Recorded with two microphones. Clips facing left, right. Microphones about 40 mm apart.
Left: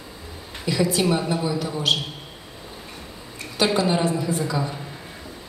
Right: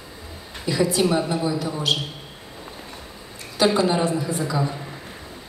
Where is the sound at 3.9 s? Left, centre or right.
Centre.